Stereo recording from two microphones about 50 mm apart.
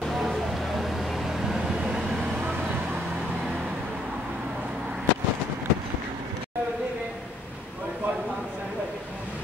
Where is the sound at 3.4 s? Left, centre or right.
Centre.